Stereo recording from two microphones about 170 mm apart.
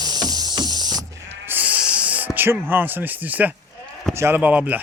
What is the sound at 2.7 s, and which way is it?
Speech, 10° right (ahead or behind).